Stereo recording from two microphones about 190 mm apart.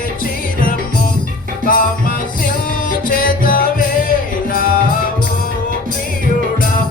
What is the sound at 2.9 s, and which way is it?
Music, 45° left (ahead or behind).